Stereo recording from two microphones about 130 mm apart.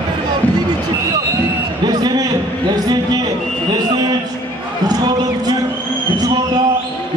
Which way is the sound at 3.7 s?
35° right (ahead or behind).